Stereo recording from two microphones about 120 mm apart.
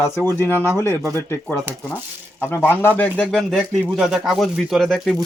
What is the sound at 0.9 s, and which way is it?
Speech, 20° right (ahead or behind).